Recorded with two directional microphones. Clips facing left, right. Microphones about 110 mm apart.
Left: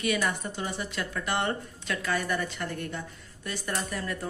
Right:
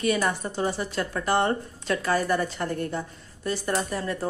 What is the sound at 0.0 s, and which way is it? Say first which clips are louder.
Speech: right 4 dB; 35° right (ahead or behind).